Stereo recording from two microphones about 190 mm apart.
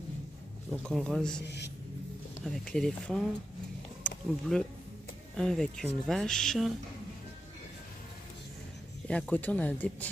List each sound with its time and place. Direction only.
0.8 s speech: centre (ahead or behind)
1.4 s a man's voice: 65° left (ahead or behind)
2.4 s speech: 5° left (ahead or behind)
4.0 s a sound: centre (ahead or behind)
5.4 s speech: centre (ahead or behind)
9.0 s speech: 5° left (ahead or behind)